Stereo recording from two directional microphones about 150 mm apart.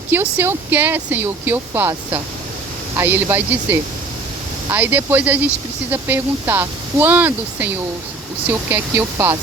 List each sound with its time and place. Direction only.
0.1 s speech: 10° right (ahead or behind)